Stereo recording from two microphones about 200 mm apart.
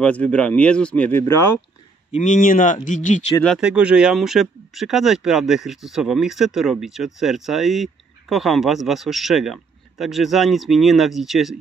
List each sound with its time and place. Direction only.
0.0 s speech: 5° left (ahead or behind)
2.1 s speech: 40° left (ahead or behind)
3.4 s speech: 5° right (ahead or behind)